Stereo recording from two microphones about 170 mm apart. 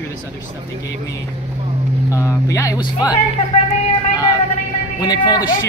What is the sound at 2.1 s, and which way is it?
Speech, 15° left (ahead or behind).